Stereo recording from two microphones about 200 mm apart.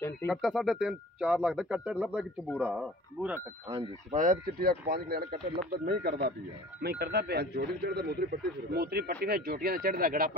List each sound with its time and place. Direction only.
0.3 s speech: centre (ahead or behind)
3.6 s speech: 25° right (ahead or behind)
4.1 s speech: 40° right (ahead or behind)